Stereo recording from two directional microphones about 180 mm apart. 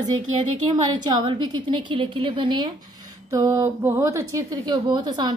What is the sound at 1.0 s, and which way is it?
Speech, 25° right (ahead or behind).